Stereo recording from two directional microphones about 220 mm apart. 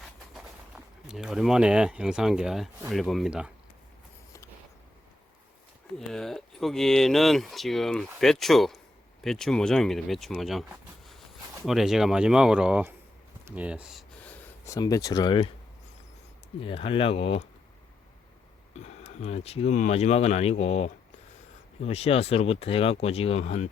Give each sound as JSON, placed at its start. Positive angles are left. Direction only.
{"t": 1.0, "sound": "speech", "side_deg": -5}
{"t": 6.0, "sound": "speech", "side_deg": 0}
{"t": 16.6, "sound": "speech", "side_deg": 25}
{"t": 18.8, "sound": "speech", "side_deg": 30}